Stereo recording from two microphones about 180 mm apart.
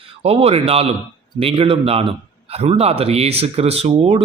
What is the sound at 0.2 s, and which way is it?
A man's voice, 35° right (ahead or behind).